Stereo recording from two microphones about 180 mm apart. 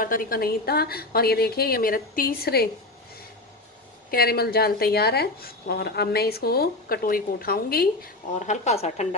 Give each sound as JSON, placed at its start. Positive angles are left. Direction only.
{"t": 0.0, "sound": "speech", "side_deg": 50}
{"t": 4.1, "sound": "speech", "side_deg": 60}
{"t": 8.4, "sound": "a woman's voice", "side_deg": 40}